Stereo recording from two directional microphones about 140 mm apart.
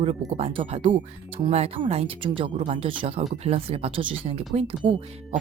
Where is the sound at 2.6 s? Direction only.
55° right (ahead or behind).